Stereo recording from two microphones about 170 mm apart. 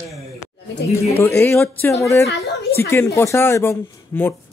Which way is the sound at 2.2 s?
70° left (ahead or behind).